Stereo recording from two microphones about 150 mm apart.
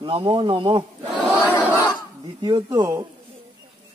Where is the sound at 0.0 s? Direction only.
35° right (ahead or behind).